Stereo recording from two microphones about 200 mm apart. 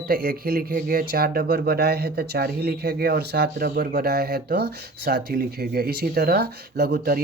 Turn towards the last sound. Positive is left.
turn(degrees=-50)  # may be behind; listen again after turning